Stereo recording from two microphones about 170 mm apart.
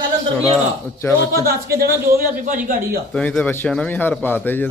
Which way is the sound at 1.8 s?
60° right (ahead or behind).